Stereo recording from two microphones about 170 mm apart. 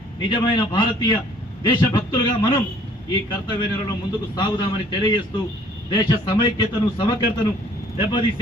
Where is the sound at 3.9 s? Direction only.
20° left (ahead or behind).